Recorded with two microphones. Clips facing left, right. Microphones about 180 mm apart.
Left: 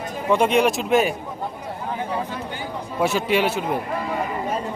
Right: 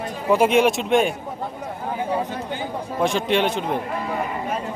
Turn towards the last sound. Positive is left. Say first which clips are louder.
# even
turn(degrees=5)  # may be behind; listen again after turning